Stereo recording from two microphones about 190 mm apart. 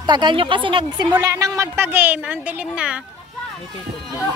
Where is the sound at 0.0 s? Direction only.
25° right (ahead or behind); by 3.0 s 5° right (ahead or behind).